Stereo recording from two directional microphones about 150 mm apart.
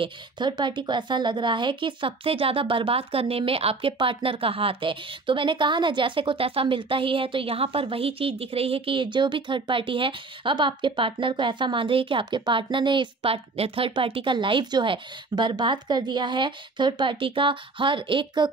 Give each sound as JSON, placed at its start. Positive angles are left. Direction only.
{"t": 0.0, "sound": "a woman's voice", "side_deg": -30}